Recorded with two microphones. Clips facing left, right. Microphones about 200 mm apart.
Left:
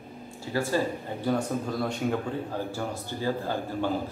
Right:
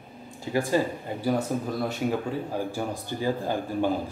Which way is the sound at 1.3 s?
5° right (ahead or behind).